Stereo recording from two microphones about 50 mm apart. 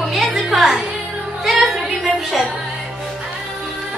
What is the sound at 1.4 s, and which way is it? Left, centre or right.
Music, centre.